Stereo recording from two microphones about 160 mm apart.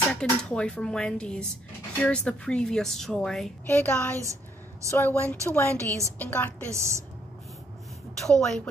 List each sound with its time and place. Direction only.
0.1 s speech: 5° left (ahead or behind)
3.6 s a woman's voice: 15° left (ahead or behind)
5.8 s a woman's voice: 20° right (ahead or behind)
6.1 s a woman's voice: 10° left (ahead or behind)
6.7 s a woman's voice: 15° right (ahead or behind)
8.2 s speech: centre (ahead or behind)